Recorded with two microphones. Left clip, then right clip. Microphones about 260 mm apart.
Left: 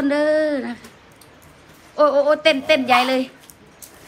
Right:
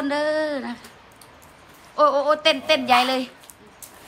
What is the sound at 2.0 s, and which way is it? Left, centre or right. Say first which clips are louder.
A man's voice: left 3 dB; centre.